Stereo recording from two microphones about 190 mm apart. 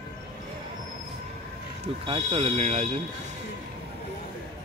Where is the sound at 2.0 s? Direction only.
30° right (ahead or behind).